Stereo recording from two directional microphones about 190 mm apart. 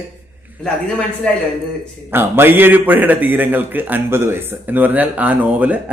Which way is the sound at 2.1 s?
10° right (ahead or behind).